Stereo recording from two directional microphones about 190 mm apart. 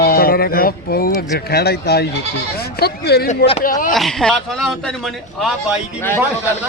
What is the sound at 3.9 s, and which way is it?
A man's voice, centre (ahead or behind).